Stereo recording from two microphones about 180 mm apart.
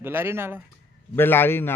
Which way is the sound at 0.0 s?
10° right (ahead or behind).